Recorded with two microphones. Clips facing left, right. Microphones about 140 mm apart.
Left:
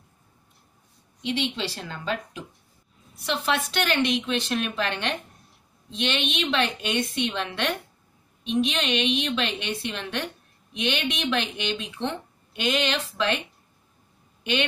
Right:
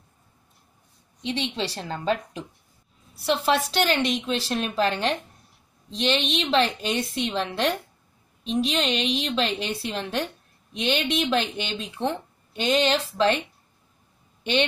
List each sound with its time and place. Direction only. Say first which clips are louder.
1.2 s a woman's voice: even; 35° right (ahead or behind)
3.4 s a woman's voice: right 2 dB; 35° right (ahead or behind)